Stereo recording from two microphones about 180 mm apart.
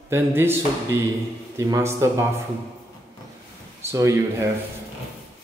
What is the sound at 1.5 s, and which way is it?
Speech, 15° right (ahead or behind).